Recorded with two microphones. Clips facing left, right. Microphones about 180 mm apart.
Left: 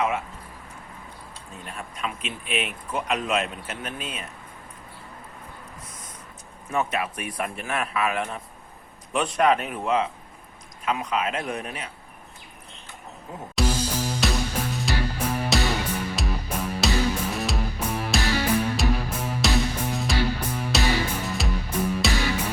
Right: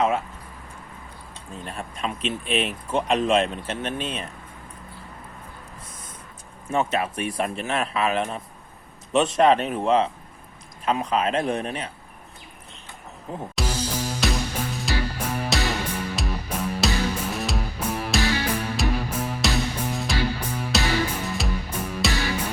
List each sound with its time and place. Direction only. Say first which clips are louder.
1.5 s speech: right 4 dB; 35° right (ahead or behind)
6.7 s speech: right 3 dB; 30° right (ahead or behind)
13.7 s music: even; 10° right (ahead or behind)